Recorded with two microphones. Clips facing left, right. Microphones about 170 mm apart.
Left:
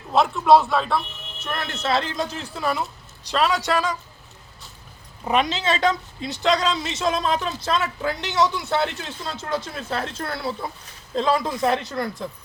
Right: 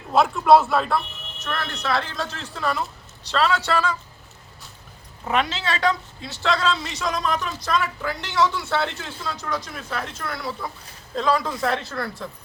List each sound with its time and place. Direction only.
0.1 s a man's voice: centre (ahead or behind)
1.4 s speech: 20° left (ahead or behind)
5.2 s a woman's voice: 20° left (ahead or behind)